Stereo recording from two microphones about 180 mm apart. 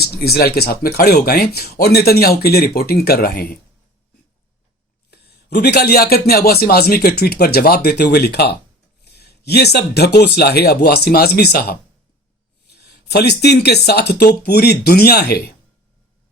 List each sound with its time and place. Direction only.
0.0 s speech: 60° left (ahead or behind)
5.1 s speech: 65° left (ahead or behind)